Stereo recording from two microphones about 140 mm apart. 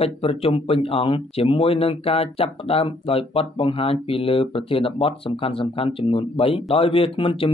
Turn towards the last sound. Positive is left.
turn(degrees=40)  # may be behind; listen again after turning